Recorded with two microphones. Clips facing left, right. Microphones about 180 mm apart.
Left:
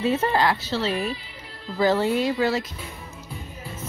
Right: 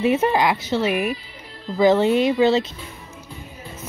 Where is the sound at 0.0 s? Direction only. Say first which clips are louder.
Right 3 dB; 15° right (ahead or behind).